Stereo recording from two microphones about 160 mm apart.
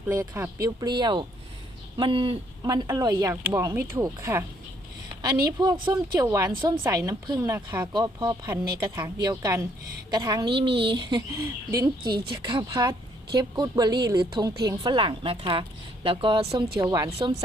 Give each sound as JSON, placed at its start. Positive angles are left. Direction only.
{"t": 0.1, "sound": "a woman's voice", "side_deg": -15}
{"t": 16.8, "sound": "a woman's voice", "side_deg": -25}